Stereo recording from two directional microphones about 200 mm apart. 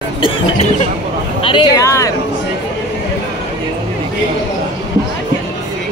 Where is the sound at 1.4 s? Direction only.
25° left (ahead or behind).